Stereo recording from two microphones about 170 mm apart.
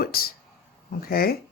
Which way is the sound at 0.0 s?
60° left (ahead or behind).